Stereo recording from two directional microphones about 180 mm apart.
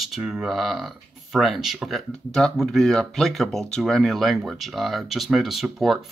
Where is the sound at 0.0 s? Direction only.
Centre (ahead or behind).